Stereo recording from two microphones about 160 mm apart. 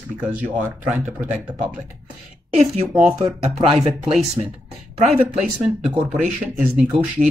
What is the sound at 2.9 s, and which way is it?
Speech, 5° right (ahead or behind).